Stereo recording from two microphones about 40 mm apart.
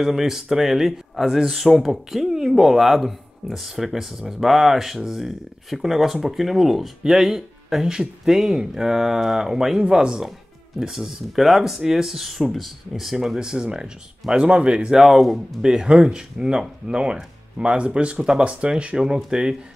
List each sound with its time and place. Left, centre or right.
0.0 s speech: centre
10.8 s speech: centre
13.4 s speech: centre
14.3 s speech: right
15.0 s speech: centre
15.6 s speech: centre